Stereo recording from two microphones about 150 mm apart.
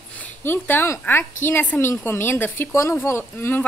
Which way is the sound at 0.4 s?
15° left (ahead or behind).